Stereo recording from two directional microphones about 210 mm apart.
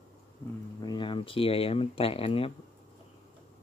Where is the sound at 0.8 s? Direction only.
20° left (ahead or behind).